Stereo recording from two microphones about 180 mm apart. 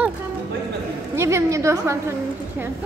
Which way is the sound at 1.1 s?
15° right (ahead or behind).